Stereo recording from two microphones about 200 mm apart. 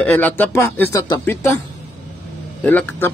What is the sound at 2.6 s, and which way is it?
Speech, 10° left (ahead or behind).